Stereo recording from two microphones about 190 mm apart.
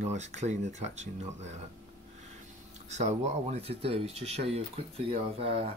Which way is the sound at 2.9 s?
35° right (ahead or behind).